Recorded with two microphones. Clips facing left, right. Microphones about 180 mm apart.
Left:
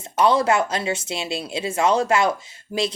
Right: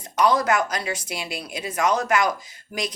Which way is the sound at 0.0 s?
25° left (ahead or behind).